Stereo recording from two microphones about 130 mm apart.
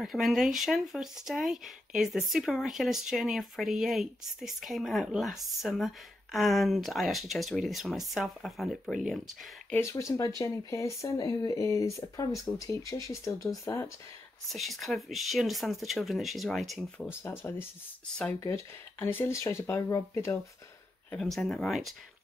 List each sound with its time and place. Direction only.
0.0 s speech: centre (ahead or behind)
9.8 s speech: 25° left (ahead or behind)
14.5 s speech: centre (ahead or behind)
17.2 s speech: 20° left (ahead or behind)
18.0 s speech: 5° left (ahead or behind)
18.4 s speech: 20° left (ahead or behind)
21.2 s speech: centre (ahead or behind)